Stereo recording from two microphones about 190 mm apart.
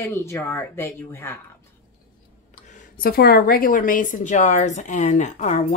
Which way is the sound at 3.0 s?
55° left (ahead or behind).